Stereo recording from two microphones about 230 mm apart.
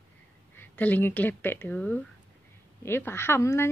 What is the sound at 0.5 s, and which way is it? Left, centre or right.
Speech, centre.